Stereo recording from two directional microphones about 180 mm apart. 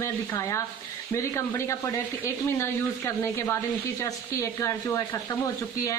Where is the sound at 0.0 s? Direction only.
15° left (ahead or behind).